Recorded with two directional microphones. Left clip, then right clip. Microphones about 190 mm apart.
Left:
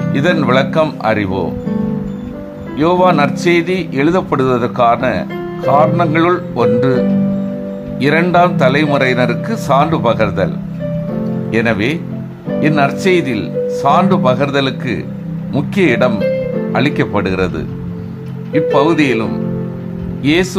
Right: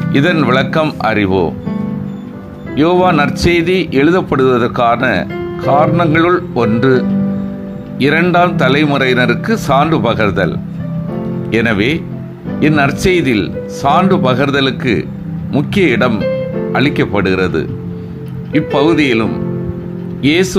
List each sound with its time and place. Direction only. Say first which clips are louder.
0.1 s speech: right 1 dB; 15° right (ahead or behind)
2.8 s speech: even; 10° right (ahead or behind)
11.5 s speech: right 2 dB; 10° right (ahead or behind)
20.2 s speech: right 1 dB; 10° right (ahead or behind)